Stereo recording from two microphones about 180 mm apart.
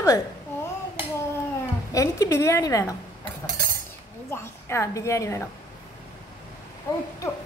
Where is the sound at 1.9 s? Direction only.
20° left (ahead or behind).